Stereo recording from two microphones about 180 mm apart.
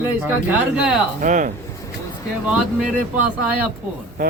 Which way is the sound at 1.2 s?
45° right (ahead or behind).